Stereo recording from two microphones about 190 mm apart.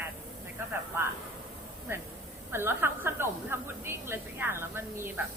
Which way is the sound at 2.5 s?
10° right (ahead or behind).